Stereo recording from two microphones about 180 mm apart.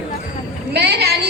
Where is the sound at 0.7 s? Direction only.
65° right (ahead or behind).